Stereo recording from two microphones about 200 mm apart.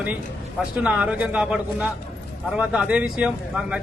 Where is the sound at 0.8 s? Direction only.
5° right (ahead or behind).